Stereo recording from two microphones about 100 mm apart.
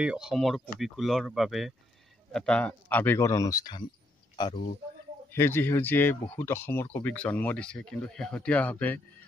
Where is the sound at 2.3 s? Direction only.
10° left (ahead or behind); by 3.7 s 35° left (ahead or behind).